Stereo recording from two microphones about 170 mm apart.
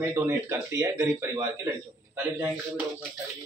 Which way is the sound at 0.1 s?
15° right (ahead or behind).